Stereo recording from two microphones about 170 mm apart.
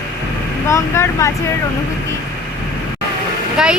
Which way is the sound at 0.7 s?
15° left (ahead or behind).